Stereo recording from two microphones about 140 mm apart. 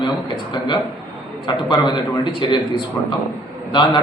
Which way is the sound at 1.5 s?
30° left (ahead or behind).